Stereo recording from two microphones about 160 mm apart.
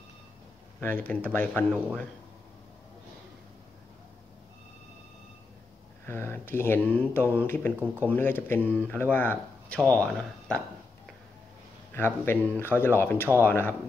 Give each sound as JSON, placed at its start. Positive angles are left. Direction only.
{"t": 0.7, "sound": "speech", "side_deg": 10}
{"t": 6.0, "sound": "speech", "side_deg": 15}
{"t": 11.9, "sound": "speech", "side_deg": 15}